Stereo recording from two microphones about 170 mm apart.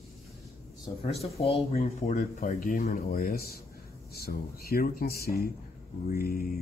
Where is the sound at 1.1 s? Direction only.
35° left (ahead or behind).